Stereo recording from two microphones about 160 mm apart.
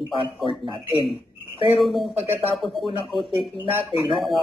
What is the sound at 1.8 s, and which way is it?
Speech, centre (ahead or behind).